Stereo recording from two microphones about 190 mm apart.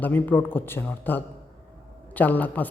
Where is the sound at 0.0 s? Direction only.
10° left (ahead or behind).